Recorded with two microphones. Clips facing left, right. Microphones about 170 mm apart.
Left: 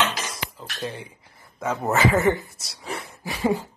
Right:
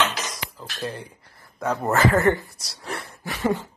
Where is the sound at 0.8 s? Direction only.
Centre (ahead or behind).